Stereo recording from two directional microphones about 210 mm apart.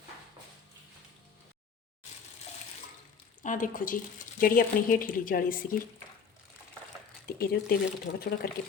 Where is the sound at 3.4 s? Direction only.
40° left (ahead or behind).